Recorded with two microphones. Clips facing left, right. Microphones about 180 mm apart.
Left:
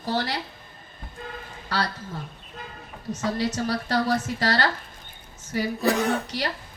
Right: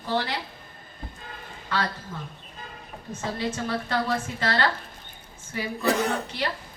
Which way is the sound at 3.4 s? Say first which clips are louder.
Right 1 dB; 40° left (ahead or behind).